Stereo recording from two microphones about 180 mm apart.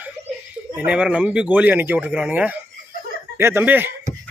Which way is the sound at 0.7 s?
5° right (ahead or behind).